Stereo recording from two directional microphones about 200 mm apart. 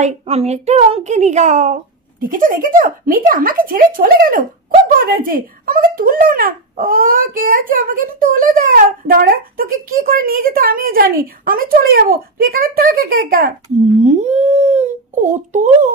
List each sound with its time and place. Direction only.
0.0 s a child's voice: 30° right (ahead or behind); by 13.5 s 50° right (ahead or behind)
14.0 s speech: 35° right (ahead or behind)